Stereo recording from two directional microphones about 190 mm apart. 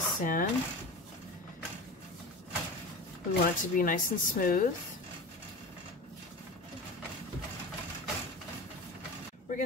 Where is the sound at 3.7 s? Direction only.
45° left (ahead or behind).